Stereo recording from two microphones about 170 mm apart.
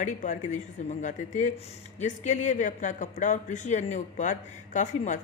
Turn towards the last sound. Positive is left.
turn(degrees=45)  # may be behind; listen again after turning